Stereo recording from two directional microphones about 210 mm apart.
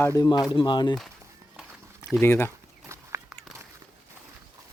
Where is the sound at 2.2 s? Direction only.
10° left (ahead or behind).